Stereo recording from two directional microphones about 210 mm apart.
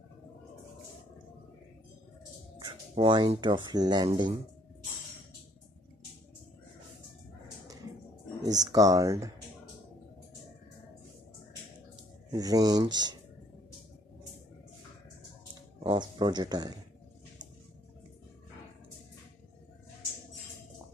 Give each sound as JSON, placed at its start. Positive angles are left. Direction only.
{"t": 2.6, "sound": "speech", "side_deg": -20}
{"t": 8.5, "sound": "speech", "side_deg": -15}
{"t": 12.3, "sound": "speech", "side_deg": -15}
{"t": 15.8, "sound": "speech", "side_deg": -25}